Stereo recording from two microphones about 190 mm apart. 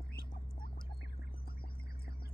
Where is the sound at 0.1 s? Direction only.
50° left (ahead or behind).